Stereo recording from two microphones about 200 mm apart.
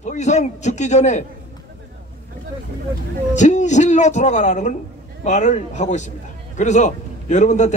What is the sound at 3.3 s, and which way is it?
A man's voice, 35° left (ahead or behind).